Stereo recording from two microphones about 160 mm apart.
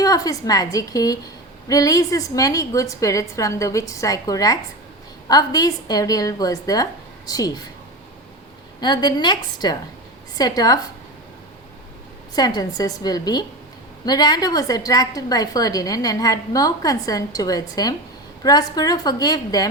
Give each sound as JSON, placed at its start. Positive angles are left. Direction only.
{"t": 0.0, "sound": "a woman's voice", "side_deg": 25}
{"t": 8.8, "sound": "a woman's voice", "side_deg": 30}
{"t": 12.3, "sound": "a woman's voice", "side_deg": 25}